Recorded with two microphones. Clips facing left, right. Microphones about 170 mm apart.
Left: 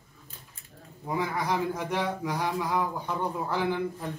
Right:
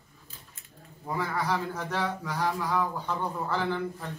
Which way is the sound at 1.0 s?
15° left (ahead or behind).